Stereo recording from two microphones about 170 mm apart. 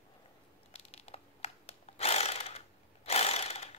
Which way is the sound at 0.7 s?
35° left (ahead or behind).